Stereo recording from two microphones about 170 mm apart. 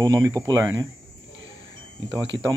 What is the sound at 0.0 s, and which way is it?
Speech, 25° right (ahead or behind).